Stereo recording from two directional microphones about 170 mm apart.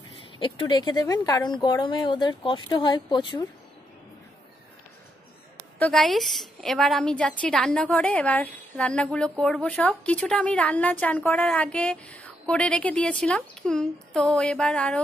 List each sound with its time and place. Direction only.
0.1 s speech: 30° left (ahead or behind)
5.8 s a woman's voice: 5° left (ahead or behind)